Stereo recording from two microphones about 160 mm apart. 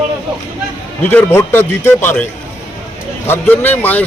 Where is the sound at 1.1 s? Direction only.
15° left (ahead or behind).